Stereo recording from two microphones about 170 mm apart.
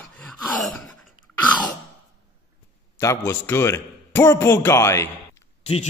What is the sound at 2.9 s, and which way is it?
A man's voice, 15° left (ahead or behind).